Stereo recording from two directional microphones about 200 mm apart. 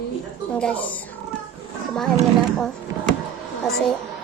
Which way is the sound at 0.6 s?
5° left (ahead or behind).